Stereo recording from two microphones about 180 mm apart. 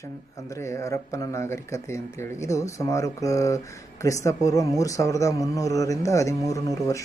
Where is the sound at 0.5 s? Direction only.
15° left (ahead or behind).